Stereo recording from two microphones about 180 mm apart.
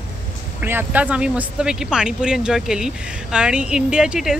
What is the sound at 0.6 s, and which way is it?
Speech, 10° right (ahead or behind).